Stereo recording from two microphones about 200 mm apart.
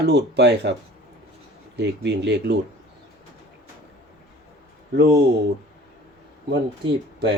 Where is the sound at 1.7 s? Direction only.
60° right (ahead or behind).